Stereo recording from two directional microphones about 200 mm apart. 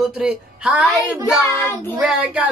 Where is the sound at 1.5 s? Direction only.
10° left (ahead or behind).